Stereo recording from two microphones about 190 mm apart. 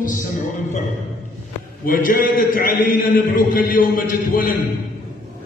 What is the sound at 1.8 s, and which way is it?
A man's voice, 45° left (ahead or behind).